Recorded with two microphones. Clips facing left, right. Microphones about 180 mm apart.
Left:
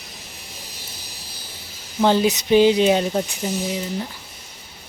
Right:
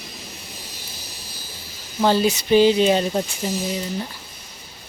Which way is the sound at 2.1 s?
20° left (ahead or behind).